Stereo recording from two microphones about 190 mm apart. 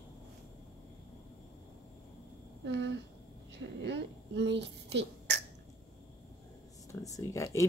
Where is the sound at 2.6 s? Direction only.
70° right (ahead or behind).